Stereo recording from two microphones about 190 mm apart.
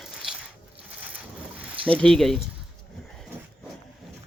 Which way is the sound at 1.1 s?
10° right (ahead or behind).